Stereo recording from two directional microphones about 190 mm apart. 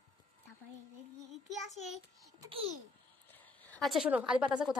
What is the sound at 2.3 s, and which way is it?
Babbling, 25° right (ahead or behind).